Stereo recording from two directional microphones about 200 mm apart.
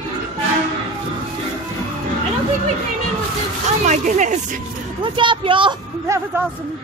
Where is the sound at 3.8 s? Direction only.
35° right (ahead or behind).